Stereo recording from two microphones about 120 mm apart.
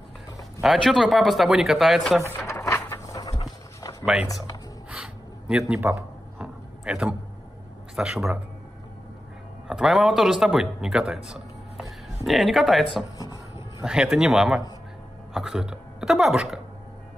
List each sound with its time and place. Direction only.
0.6 s speech: centre (ahead or behind)
2.4 s horse: 25° left (ahead or behind)
4.0 s speech: 5° right (ahead or behind)
4.9 s a sound: 5° right (ahead or behind)
7.9 s speech: 5° right (ahead or behind)
9.7 s speech: 5° right (ahead or behind)